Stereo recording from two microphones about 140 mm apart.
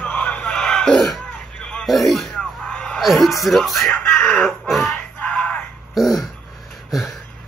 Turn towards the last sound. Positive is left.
turn(degrees=0)  # may be behind; listen again after turning